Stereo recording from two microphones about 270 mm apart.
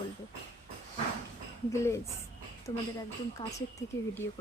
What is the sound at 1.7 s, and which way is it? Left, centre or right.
Speech, centre.